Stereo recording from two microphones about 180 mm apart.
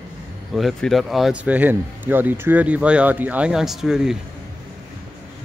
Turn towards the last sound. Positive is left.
turn(degrees=-5)  # may be behind; listen again after turning